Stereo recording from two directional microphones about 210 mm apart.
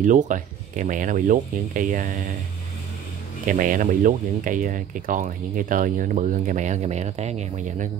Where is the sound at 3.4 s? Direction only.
40° right (ahead or behind).